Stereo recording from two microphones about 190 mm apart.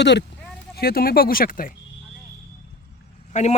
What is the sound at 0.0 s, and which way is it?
Speech, 65° left (ahead or behind).